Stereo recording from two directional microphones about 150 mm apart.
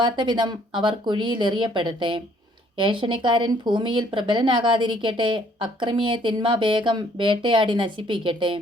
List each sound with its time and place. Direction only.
0.0 s speech: 30° right (ahead or behind)